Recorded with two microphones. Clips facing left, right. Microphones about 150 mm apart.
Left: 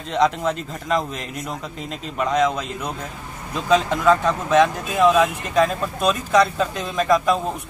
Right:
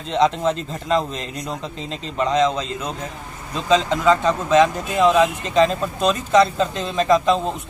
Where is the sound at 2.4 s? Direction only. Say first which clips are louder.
Right 1 dB; 20° right (ahead or behind).